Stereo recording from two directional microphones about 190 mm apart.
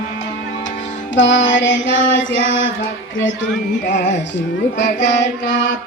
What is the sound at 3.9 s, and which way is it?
Music, 40° left (ahead or behind).